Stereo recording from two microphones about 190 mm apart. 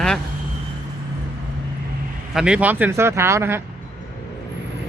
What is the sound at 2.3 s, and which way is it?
Speech, 5° right (ahead or behind).